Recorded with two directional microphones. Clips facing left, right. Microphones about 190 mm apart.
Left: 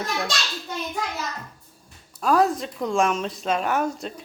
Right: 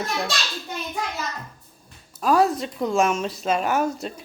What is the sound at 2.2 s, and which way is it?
A child's voice, centre (ahead or behind).